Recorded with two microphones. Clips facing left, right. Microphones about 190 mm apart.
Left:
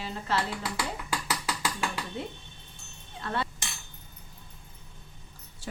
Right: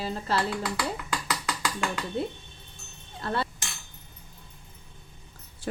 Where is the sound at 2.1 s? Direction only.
35° right (ahead or behind).